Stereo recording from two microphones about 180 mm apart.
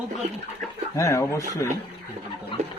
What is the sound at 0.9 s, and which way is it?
Speech, 15° left (ahead or behind).